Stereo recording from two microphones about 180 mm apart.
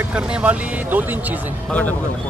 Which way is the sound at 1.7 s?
10° left (ahead or behind).